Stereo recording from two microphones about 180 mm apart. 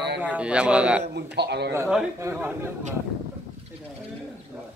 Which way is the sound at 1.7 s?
5° right (ahead or behind).